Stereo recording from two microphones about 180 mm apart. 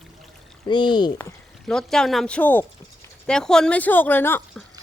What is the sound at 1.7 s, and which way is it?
Speech, 5° left (ahead or behind).